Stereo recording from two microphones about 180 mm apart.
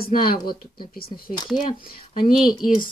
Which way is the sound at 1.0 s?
25° left (ahead or behind).